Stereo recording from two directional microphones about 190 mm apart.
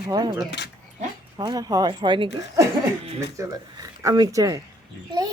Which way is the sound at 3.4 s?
15° right (ahead or behind).